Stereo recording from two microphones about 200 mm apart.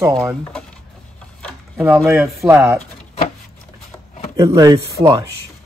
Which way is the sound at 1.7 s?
5° right (ahead or behind).